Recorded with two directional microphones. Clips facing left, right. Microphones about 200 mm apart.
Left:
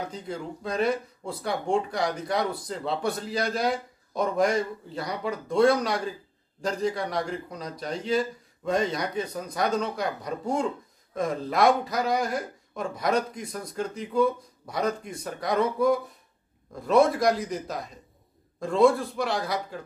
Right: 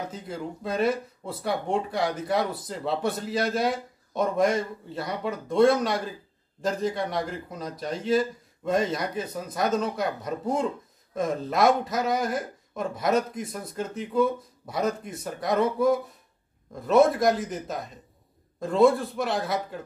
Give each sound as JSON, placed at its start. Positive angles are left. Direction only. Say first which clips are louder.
{"t": 0.1, "sound": "speech", "louder": "even", "side_deg": -5}